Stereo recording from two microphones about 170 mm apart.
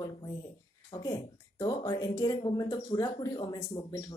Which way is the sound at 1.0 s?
20° left (ahead or behind).